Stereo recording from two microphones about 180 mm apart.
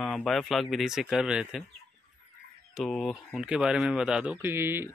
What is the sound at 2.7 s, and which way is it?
Speech, centre (ahead or behind).